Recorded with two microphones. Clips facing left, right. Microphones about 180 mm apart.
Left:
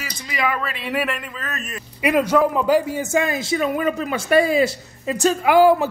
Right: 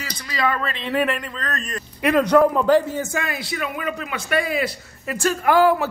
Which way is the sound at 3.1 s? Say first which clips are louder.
Left 7 dB; 20° left (ahead or behind).